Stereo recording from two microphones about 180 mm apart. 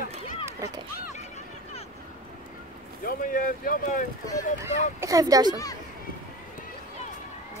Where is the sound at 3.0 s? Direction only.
50° left (ahead or behind).